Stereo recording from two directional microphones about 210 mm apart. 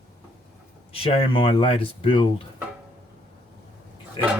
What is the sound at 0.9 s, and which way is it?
Speech, 25° left (ahead or behind).